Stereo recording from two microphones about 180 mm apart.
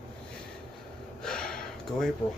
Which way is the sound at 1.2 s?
5° left (ahead or behind).